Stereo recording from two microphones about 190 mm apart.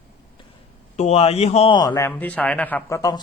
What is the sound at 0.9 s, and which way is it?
A man's voice, 35° left (ahead or behind).